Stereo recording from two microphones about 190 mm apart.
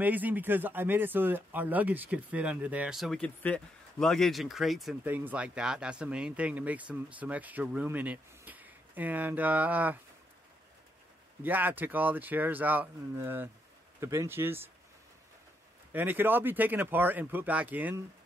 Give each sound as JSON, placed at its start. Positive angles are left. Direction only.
{"t": 0.0, "sound": "speech", "side_deg": -10}
{"t": 11.4, "sound": "speech", "side_deg": -10}
{"t": 15.9, "sound": "speech", "side_deg": -10}